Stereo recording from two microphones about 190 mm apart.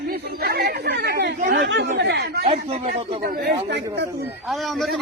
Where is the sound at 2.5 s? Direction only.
30° right (ahead or behind).